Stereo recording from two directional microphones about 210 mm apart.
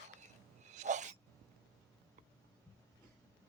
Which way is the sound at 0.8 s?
35° right (ahead or behind).